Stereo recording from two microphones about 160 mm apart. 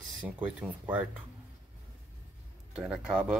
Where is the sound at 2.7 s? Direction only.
5° right (ahead or behind).